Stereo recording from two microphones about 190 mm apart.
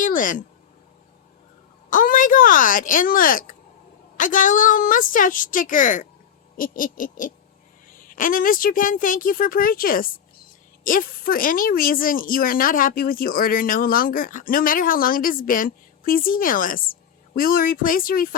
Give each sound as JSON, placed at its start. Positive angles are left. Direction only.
{"t": 0.0, "sound": "speech", "side_deg": 45}
{"t": 1.9, "sound": "speech", "side_deg": 45}